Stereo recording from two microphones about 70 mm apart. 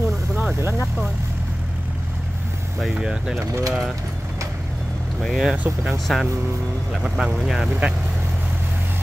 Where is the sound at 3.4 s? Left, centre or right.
Right.